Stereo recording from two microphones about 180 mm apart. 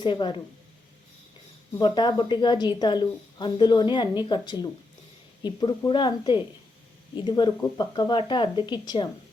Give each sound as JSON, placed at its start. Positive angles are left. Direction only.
{"t": 0.0, "sound": "a woman's voice", "side_deg": 25}
{"t": 1.8, "sound": "a woman's voice", "side_deg": 25}